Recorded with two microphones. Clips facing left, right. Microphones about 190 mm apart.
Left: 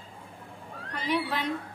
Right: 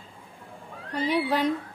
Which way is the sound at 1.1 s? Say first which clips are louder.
Right 4 dB; 40° right (ahead or behind).